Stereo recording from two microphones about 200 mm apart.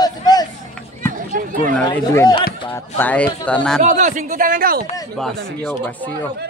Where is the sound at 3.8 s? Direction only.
40° right (ahead or behind).